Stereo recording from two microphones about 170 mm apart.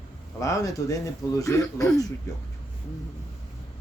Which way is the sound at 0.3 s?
20° left (ahead or behind).